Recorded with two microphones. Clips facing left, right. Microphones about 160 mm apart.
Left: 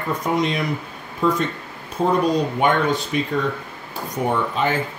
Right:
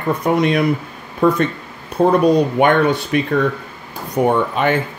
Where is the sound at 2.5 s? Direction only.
65° right (ahead or behind).